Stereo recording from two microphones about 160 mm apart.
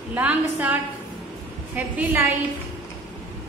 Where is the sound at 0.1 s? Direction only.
10° right (ahead or behind).